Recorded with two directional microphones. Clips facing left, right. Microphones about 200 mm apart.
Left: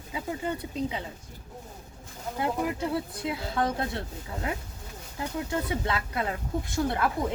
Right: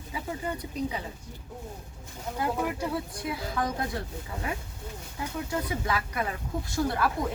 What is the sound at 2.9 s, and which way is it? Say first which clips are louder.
Speech: left 2 dB; 25° left (ahead or behind).